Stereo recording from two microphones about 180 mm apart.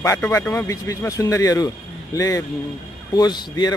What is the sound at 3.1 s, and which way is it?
Speech, 20° left (ahead or behind).